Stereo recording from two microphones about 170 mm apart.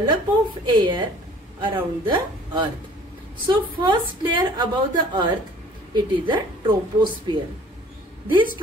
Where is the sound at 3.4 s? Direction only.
25° right (ahead or behind).